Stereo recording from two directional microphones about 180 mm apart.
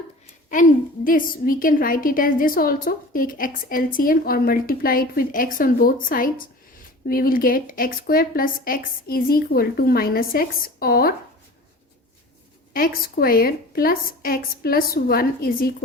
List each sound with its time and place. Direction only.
0.5 s a woman's voice: 50° left (ahead or behind)
12.7 s a woman's voice: 55° left (ahead or behind)